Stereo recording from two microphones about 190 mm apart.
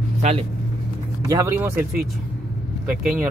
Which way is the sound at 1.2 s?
15° right (ahead or behind).